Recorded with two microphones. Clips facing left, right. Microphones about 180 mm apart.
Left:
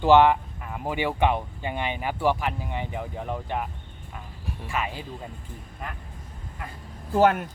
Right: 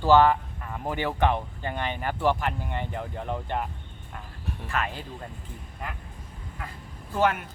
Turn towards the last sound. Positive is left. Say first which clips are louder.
# left 5 dB
turn(degrees=40)  # may be behind; listen again after turning